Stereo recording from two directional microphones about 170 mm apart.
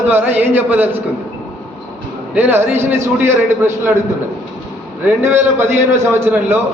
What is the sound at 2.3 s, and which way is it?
A man's voice, 10° right (ahead or behind).